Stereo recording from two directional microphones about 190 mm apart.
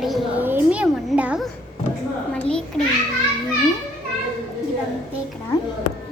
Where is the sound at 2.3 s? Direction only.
5° left (ahead or behind).